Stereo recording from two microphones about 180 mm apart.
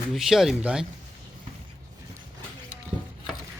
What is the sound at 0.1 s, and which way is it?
Speech, centre (ahead or behind).